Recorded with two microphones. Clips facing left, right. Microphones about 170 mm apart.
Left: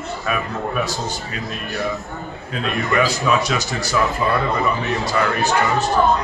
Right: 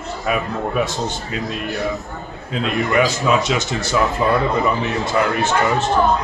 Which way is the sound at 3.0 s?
25° right (ahead or behind).